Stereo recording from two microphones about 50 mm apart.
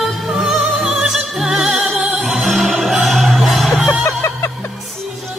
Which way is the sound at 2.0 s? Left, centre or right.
Right.